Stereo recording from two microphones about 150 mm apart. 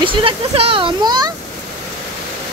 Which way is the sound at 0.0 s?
35° right (ahead or behind).